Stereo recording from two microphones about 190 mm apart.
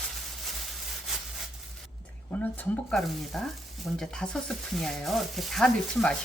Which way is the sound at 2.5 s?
Centre (ahead or behind).